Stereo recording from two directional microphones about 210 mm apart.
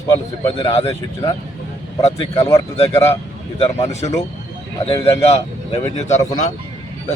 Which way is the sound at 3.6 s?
30° left (ahead or behind).